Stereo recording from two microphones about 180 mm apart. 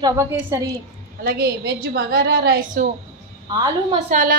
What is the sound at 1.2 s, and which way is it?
A woman's voice, 60° right (ahead or behind).